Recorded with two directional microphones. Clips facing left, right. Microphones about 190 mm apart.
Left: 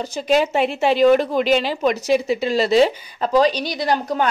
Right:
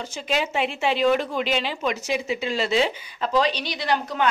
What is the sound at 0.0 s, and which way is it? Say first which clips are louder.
A woman's voice: left 8 dB; 40° left (ahead or behind).